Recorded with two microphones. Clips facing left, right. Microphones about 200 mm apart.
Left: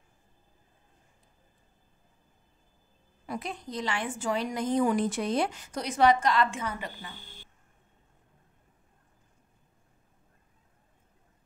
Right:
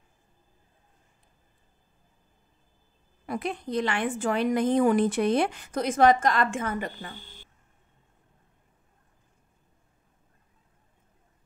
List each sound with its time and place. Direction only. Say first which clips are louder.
3.3 s a woman's voice: right 5 dB; 60° right (ahead or behind)